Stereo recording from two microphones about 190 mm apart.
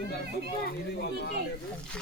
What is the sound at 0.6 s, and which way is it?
Speech, 60° left (ahead or behind).